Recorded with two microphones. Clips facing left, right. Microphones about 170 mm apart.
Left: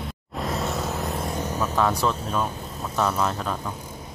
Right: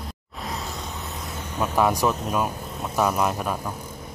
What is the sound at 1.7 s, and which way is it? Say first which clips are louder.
Speech: right 3 dB; 10° right (ahead or behind).